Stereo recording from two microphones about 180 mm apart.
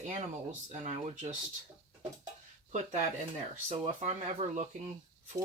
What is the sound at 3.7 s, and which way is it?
Speech, 35° right (ahead or behind).